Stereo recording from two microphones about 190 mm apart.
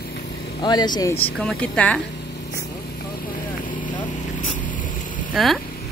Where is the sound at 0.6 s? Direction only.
20° left (ahead or behind).